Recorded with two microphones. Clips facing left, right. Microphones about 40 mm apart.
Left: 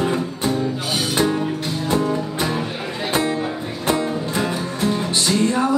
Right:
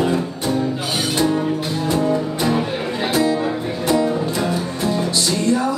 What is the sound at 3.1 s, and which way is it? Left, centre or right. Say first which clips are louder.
Music: right 2 dB; left.